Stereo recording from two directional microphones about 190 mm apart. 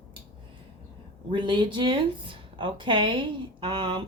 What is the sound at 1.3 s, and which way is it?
A woman's voice, 25° right (ahead or behind).